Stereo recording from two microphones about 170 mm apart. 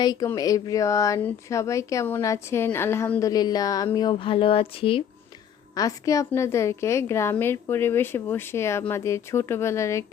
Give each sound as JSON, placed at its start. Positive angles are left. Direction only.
{"t": 0.0, "sound": "speech", "side_deg": 20}
{"t": 5.7, "sound": "a woman's voice", "side_deg": 20}